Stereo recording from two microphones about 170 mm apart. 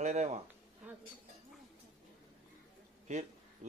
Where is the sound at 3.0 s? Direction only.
45° right (ahead or behind).